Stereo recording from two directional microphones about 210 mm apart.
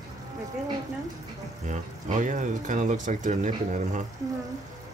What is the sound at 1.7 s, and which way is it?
Speech, 35° right (ahead or behind).